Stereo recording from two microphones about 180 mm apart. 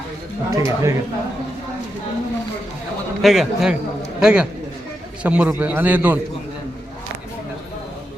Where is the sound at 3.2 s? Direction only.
Centre (ahead or behind).